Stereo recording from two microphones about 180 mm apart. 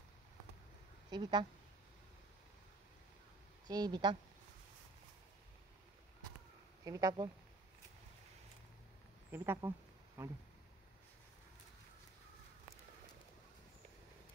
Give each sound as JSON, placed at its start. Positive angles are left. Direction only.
{"t": 1.1, "sound": "speech", "side_deg": -25}
{"t": 3.6, "sound": "speech", "side_deg": -20}
{"t": 6.8, "sound": "speech", "side_deg": -20}
{"t": 9.3, "sound": "speech", "side_deg": -15}